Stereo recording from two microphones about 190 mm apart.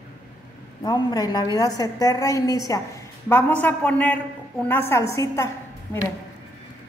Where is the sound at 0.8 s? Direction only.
20° left (ahead or behind).